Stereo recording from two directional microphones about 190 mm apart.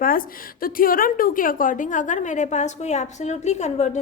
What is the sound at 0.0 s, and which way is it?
A woman's voice, 50° left (ahead or behind).